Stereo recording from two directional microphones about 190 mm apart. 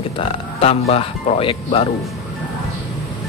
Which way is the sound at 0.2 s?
30° left (ahead or behind).